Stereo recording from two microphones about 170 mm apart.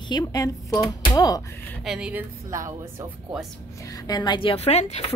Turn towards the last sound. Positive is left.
turn(degrees=40)  # may be behind; listen again after turning